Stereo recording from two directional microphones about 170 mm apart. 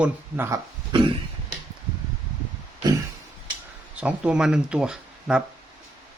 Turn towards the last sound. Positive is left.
turn(degrees=-5)  # may be behind; listen again after turning